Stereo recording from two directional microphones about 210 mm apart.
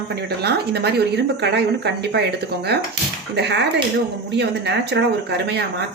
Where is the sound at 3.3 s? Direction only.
55° right (ahead or behind).